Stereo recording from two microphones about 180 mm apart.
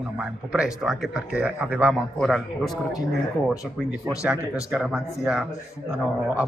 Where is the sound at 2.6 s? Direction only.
20° left (ahead or behind).